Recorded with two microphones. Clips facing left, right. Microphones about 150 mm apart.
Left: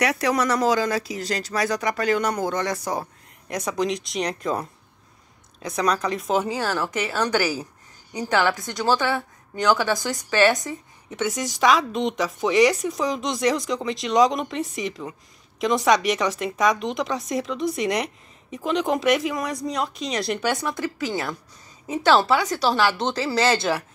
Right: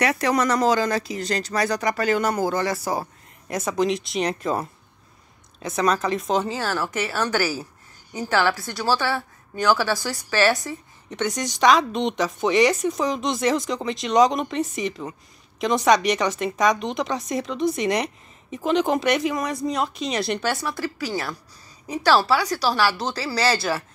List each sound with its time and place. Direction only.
0.0 s a woman's voice: centre (ahead or behind); by 11.1 s 15° left (ahead or behind)
11.1 s a woman's voice: 5° left (ahead or behind)
20.4 s a woman's voice: 20° left (ahead or behind)